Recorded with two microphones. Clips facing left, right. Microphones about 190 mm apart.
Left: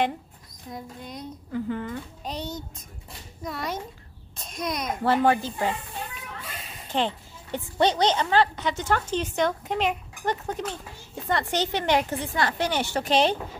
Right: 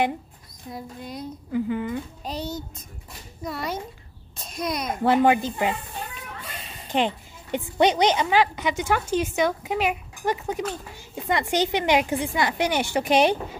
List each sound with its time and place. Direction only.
0.7 s a child's voice: 5° right (ahead or behind)
5.0 s a woman's voice: 15° right (ahead or behind)
6.4 s children playing: centre (ahead or behind)
6.9 s a woman's voice: 15° right (ahead or behind)